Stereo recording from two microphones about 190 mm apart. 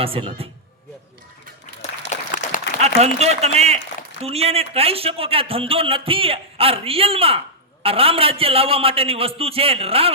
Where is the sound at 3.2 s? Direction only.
35° right (ahead or behind).